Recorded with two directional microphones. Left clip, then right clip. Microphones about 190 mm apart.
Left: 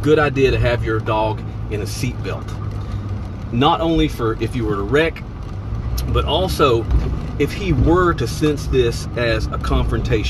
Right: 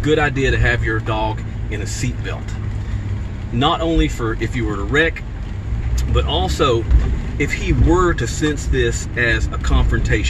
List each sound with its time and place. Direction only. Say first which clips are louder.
0.0 s speech: left 2 dB; 20° left (ahead or behind)
3.5 s speech: left 1 dB; 25° left (ahead or behind)
6.1 s speech: left 1 dB; 20° left (ahead or behind)